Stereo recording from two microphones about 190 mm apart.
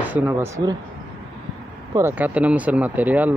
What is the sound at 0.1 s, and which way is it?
Speech, 10° right (ahead or behind).